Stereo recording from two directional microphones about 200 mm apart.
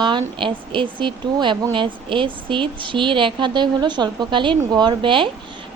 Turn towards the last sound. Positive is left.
turn(degrees=-25)  # may be behind; listen again after turning